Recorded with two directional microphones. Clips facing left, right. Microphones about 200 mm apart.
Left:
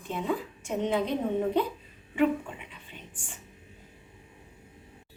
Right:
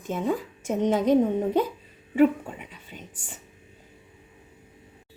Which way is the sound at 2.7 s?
40° right (ahead or behind).